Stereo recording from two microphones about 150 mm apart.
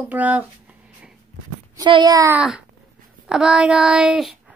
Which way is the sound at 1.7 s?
25° right (ahead or behind).